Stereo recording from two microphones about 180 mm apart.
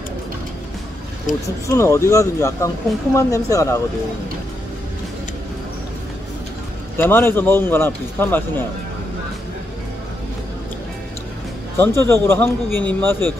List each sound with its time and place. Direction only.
1.3 s speech: 45° left (ahead or behind)
1.7 s a man's voice: 15° left (ahead or behind)
7.0 s a man's voice: 10° left (ahead or behind)
11.8 s a man's voice: 15° left (ahead or behind)